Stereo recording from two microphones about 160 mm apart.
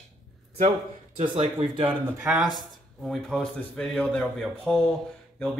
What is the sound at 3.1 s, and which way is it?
A man's voice, centre (ahead or behind).